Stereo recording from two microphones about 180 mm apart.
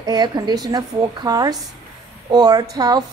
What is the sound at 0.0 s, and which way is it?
A woman's voice, 25° right (ahead or behind).